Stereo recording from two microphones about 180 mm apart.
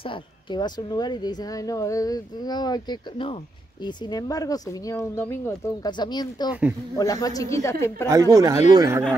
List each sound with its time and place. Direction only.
0.0 s speech: 25° left (ahead or behind)
8.4 s speech: 15° right (ahead or behind)